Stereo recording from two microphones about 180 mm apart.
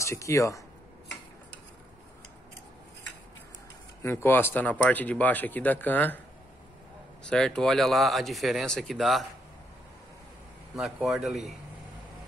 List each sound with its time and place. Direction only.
0.0 s speech: 15° left (ahead or behind)
4.0 s speech: 15° left (ahead or behind)
7.2 s speech: 5° left (ahead or behind)
10.8 s speech: 5° right (ahead or behind)